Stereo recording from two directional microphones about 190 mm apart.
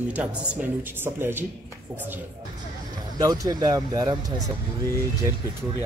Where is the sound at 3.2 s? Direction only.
20° right (ahead or behind).